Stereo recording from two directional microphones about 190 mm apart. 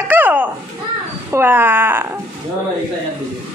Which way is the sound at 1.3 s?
10° right (ahead or behind).